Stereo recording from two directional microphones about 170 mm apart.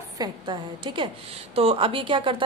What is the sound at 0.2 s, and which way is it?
A woman's voice, 25° right (ahead or behind).